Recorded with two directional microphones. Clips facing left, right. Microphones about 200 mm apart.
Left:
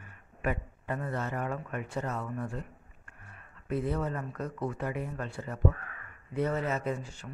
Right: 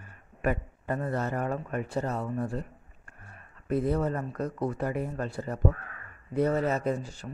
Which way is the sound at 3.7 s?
40° right (ahead or behind).